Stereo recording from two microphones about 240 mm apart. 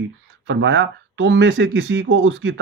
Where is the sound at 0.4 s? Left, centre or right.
Right.